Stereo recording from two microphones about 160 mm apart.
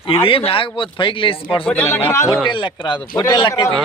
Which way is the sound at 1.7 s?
10° left (ahead or behind).